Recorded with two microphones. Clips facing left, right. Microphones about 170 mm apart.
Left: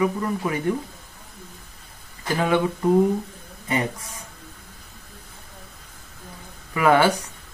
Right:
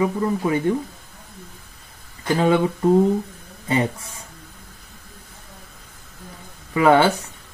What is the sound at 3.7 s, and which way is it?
Speech, 30° right (ahead or behind).